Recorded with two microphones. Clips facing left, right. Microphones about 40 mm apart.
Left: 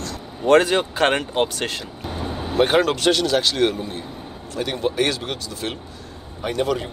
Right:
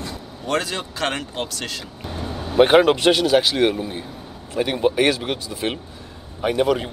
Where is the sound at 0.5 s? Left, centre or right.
Left.